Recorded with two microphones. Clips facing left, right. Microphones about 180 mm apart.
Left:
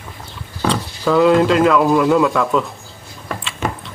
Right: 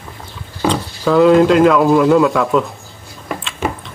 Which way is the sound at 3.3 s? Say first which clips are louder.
Right 2 dB; 10° right (ahead or behind).